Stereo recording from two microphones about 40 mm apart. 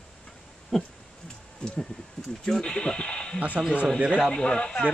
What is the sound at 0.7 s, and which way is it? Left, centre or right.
Speech, centre.